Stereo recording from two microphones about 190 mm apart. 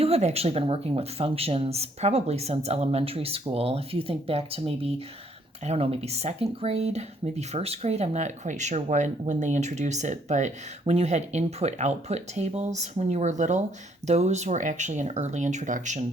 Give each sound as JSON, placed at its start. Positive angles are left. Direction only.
{"t": 0.0, "sound": "speech", "side_deg": -35}